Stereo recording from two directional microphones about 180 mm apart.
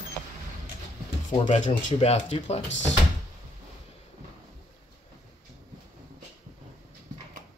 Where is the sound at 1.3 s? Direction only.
40° left (ahead or behind).